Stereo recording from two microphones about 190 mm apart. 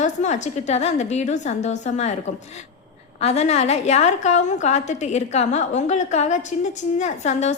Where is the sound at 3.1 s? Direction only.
35° left (ahead or behind).